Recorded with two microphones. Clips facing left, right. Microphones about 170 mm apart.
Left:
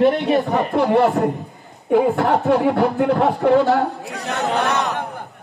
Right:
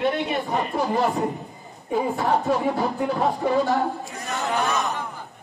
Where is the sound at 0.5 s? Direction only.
70° left (ahead or behind).